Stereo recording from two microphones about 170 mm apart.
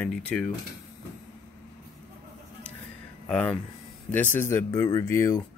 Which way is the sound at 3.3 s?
5° left (ahead or behind).